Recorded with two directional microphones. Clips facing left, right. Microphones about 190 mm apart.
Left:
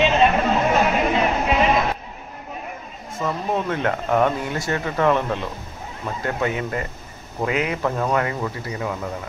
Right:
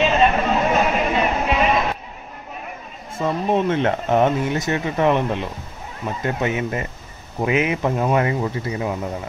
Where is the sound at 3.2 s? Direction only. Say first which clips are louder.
Right 4 dB; 25° right (ahead or behind).